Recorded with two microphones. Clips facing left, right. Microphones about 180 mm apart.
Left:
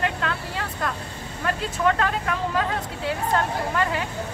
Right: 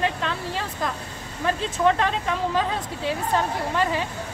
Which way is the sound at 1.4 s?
20° right (ahead or behind).